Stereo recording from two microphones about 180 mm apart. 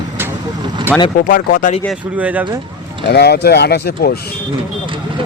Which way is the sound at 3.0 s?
65° left (ahead or behind).